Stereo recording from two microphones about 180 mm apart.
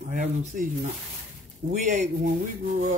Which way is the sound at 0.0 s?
40° right (ahead or behind).